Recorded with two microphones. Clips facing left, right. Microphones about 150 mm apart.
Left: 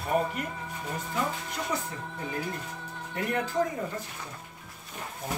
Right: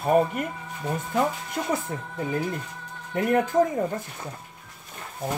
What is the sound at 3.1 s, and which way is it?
Speech, 50° right (ahead or behind).